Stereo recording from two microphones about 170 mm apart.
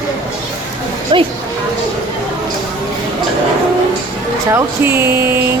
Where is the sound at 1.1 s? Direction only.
30° right (ahead or behind).